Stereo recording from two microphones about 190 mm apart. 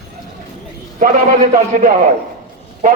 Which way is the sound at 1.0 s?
45° right (ahead or behind).